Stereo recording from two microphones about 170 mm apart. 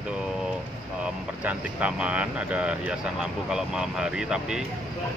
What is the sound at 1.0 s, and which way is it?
Speech, 10° right (ahead or behind).